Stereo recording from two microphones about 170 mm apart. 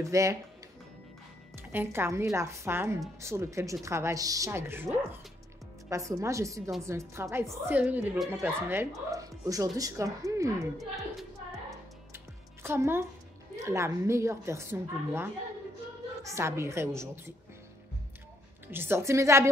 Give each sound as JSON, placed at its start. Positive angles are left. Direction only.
{"t": 0.0, "sound": "a woman's voice", "side_deg": -20}
{"t": 1.6, "sound": "a woman's voice", "side_deg": -10}
{"t": 10.8, "sound": "a woman's voice", "side_deg": 0}
{"t": 12.6, "sound": "a woman's voice", "side_deg": -15}
{"t": 18.7, "sound": "a woman's voice", "side_deg": -15}